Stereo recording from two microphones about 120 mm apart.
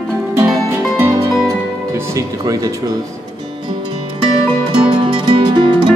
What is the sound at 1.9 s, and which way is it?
Speech, 25° right (ahead or behind).